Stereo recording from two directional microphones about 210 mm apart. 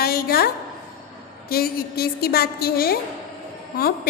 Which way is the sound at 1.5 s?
45° left (ahead or behind).